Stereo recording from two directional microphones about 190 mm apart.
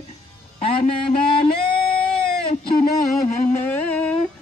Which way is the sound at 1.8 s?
5° left (ahead or behind).